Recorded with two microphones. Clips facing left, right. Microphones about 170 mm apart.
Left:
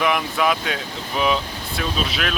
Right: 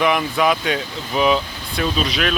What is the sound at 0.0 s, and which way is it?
Speech, centre (ahead or behind).